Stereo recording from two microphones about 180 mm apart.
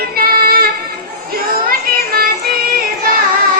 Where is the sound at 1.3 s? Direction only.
55° right (ahead or behind).